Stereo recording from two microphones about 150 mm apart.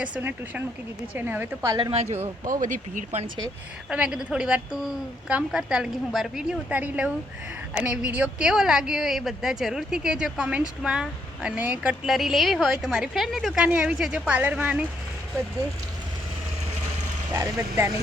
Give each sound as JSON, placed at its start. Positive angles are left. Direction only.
{"t": 0.0, "sound": "speech", "side_deg": -10}
{"t": 2.5, "sound": "speech", "side_deg": -60}
{"t": 3.8, "sound": "a woman's voice", "side_deg": -5}
{"t": 17.3, "sound": "speech", "side_deg": -20}